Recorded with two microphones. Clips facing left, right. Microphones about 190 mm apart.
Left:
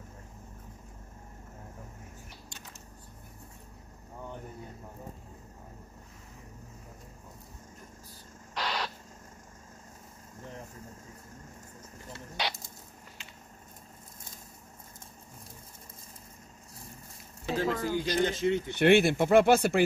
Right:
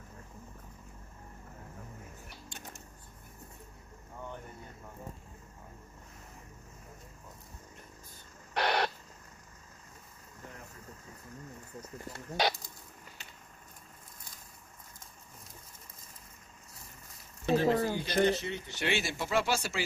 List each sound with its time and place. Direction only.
8.5 s owl: 60° right (ahead or behind)
12.1 s a sound: 45° right (ahead or behind)
17.6 s speech: 45° right (ahead or behind)
18.4 s speech: 55° left (ahead or behind)